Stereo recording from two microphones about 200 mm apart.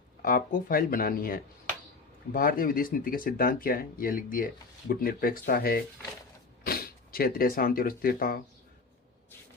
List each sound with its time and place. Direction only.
0.2 s speech: 45° left (ahead or behind)